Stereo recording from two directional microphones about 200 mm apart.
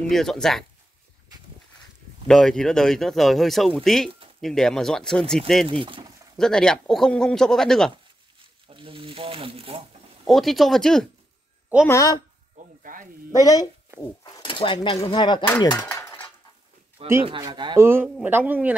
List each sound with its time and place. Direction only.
0.1 s speech: centre (ahead or behind)
2.2 s speech: 5° left (ahead or behind)
5.7 s speech: 25° right (ahead or behind)
6.3 s speech: 5° left (ahead or behind)
8.6 s a sound: 25° right (ahead or behind)
10.2 s speech: centre (ahead or behind)
11.9 s a woman's voice: 15° left (ahead or behind)
12.5 s sizzle: 40° right (ahead or behind)
13.3 s a woman's voice: 15° left (ahead or behind)
17.3 s speech: 20° right (ahead or behind)
17.7 s speech: 10° right (ahead or behind)